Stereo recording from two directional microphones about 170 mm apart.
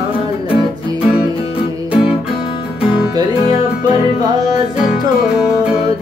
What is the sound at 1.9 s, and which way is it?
Music, 5° right (ahead or behind).